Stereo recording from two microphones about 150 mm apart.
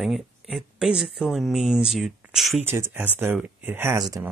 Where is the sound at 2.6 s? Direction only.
15° right (ahead or behind).